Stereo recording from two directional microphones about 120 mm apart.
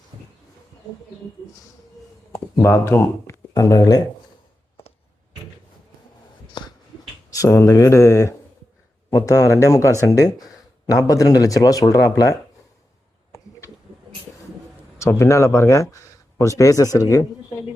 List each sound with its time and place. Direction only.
2.3 s speech: 25° left (ahead or behind)
6.6 s finger snapping: 40° left (ahead or behind)
7.3 s speech: 30° left (ahead or behind)
14.9 s speech: 25° left (ahead or behind)